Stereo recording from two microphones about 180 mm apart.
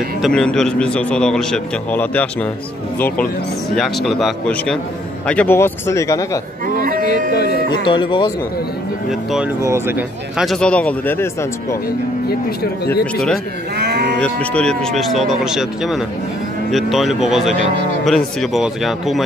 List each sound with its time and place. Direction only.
0.2 s a man's voice: 5° left (ahead or behind)
3.7 s a man's voice: centre (ahead or behind); by 6.4 s 20° left (ahead or behind)
6.7 s a sound: 50° right (ahead or behind)
7.3 s music: 65° left (ahead or behind)
7.8 s speech: 25° left (ahead or behind)
9.6 s a man's voice: 15° right (ahead or behind); by 11.2 s 10° left (ahead or behind)
13.0 s a man's voice: centre (ahead or behind)
13.7 s moo: 65° right (ahead or behind)
14.2 s a man's voice: 5° left (ahead or behind)